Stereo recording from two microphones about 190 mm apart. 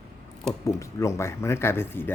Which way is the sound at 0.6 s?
15° left (ahead or behind).